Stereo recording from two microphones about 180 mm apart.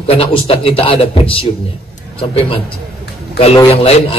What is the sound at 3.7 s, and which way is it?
Speech, 35° left (ahead or behind).